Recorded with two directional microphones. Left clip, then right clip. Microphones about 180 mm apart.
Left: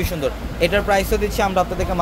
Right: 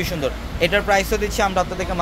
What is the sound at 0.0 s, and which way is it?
Speech, centre (ahead or behind).